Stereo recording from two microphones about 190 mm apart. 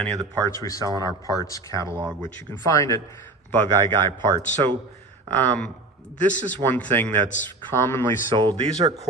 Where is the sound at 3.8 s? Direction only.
25° right (ahead or behind).